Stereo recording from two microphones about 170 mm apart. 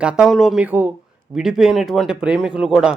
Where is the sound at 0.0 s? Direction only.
5° right (ahead or behind).